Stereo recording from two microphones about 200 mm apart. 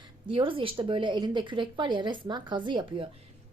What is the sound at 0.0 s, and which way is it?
A woman's voice, 25° right (ahead or behind).